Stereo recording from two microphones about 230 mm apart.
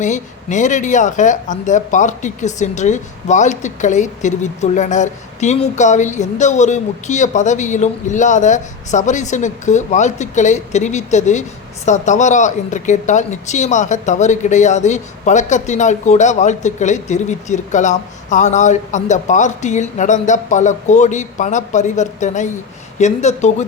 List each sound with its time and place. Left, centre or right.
0.0 s speech: left